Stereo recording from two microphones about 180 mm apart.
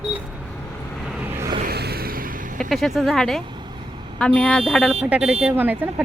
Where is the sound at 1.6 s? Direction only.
60° right (ahead or behind).